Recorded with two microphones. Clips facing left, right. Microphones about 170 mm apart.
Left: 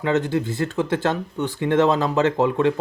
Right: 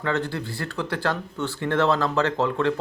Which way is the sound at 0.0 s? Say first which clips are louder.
Left 6 dB; 20° left (ahead or behind).